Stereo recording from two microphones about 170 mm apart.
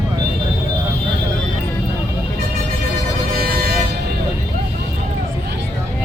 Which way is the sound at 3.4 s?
60° right (ahead or behind).